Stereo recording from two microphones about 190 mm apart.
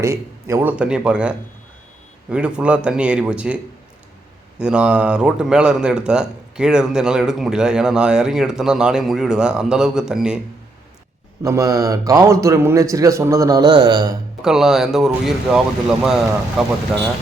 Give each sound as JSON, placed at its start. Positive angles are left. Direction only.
{"t": 0.0, "sound": "a man's voice", "side_deg": -15}
{"t": 4.6, "sound": "speech", "side_deg": -5}
{"t": 11.4, "sound": "a man's voice", "side_deg": -15}
{"t": 14.4, "sound": "speech", "side_deg": 0}